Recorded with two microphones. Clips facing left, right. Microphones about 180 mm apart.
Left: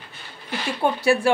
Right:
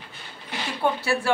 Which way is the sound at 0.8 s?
15° left (ahead or behind).